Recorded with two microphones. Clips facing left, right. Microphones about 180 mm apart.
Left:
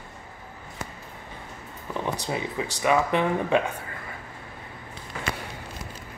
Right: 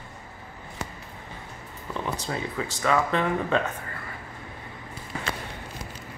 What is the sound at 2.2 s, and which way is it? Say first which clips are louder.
Speech: left 1 dB; 15° left (ahead or behind).